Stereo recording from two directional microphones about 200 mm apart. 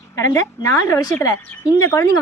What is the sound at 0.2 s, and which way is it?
A woman's voice, 15° left (ahead or behind).